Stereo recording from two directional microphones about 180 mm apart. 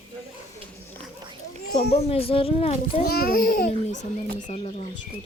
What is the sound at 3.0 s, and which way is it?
Speech, 55° left (ahead or behind).